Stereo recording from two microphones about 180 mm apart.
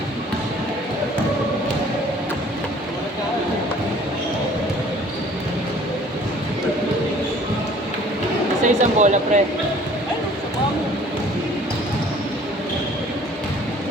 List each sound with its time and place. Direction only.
8.6 s speech: 40° right (ahead or behind)